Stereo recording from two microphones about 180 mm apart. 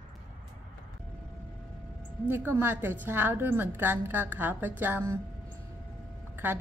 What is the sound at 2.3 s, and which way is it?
A woman's voice, 10° right (ahead or behind).